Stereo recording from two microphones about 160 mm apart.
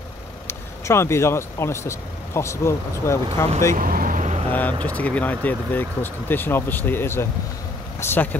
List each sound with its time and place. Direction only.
0.5 s speech: 15° left (ahead or behind)
3.7 s vehicle: 60° right (ahead or behind)
4.5 s speech: 10° left (ahead or behind)